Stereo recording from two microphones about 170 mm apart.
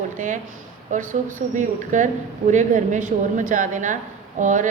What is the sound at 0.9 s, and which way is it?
A woman's voice, 45° right (ahead or behind).